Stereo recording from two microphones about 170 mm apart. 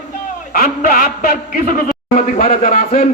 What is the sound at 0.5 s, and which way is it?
A man's voice, 55° left (ahead or behind).